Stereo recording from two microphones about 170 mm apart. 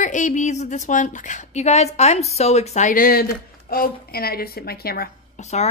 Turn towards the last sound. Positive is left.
turn(degrees=40)  # may be behind; listen again after turning